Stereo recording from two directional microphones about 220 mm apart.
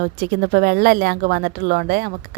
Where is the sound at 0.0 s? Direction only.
45° right (ahead or behind).